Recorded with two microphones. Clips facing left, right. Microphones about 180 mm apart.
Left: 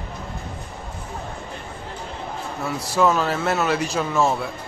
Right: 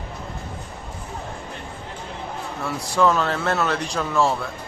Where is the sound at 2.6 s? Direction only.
5° left (ahead or behind).